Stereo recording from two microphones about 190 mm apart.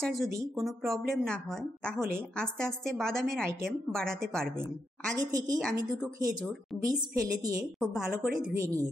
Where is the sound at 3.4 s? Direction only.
15° right (ahead or behind).